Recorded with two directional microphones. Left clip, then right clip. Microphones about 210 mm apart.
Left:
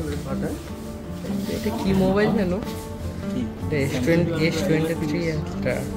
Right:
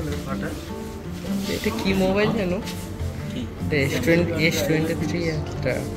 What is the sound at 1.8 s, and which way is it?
Speech, 20° left (ahead or behind).